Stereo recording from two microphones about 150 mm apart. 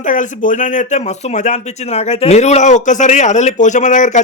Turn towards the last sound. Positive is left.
turn(degrees=55)  # may be behind; listen again after turning